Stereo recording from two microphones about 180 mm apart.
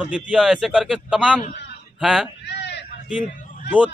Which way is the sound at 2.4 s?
75° left (ahead or behind).